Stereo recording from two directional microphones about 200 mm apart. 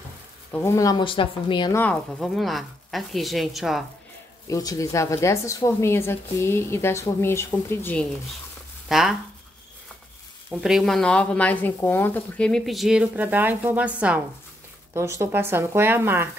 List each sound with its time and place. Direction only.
0.5 s speech: 10° left (ahead or behind)
1.8 s speech: 5° left (ahead or behind)
4.5 s a woman's voice: 15° left (ahead or behind); by 9.1 s centre (ahead or behind)
10.6 s speech: centre (ahead or behind)